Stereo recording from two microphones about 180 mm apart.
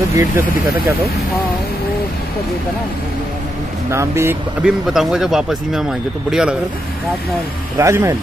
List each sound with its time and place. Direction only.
0.1 s speech: 15° right (ahead or behind)
3.9 s speech: 15° right (ahead or behind)
7.7 s speech: 15° right (ahead or behind)